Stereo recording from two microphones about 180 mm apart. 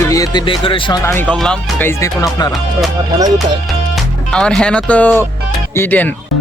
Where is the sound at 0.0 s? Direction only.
20° left (ahead or behind).